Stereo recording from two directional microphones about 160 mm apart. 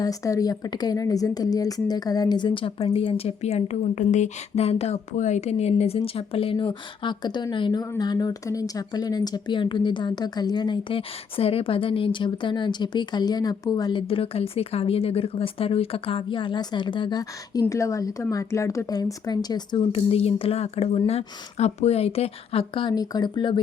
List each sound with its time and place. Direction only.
0.0 s a woman's voice: 20° left (ahead or behind)